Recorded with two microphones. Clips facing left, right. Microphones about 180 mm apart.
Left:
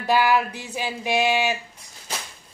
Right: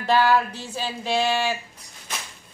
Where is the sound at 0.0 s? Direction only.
10° left (ahead or behind).